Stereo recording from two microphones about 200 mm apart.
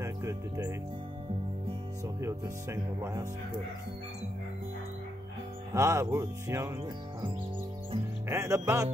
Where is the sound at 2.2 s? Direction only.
15° right (ahead or behind).